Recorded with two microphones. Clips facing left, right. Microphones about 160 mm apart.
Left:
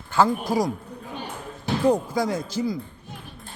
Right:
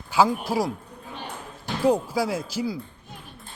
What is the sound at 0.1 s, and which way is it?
Speech, 10° right (ahead or behind).